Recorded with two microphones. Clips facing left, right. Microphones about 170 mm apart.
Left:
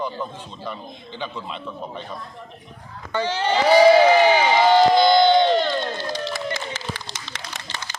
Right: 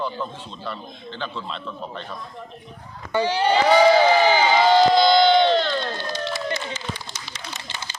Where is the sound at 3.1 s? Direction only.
15° right (ahead or behind).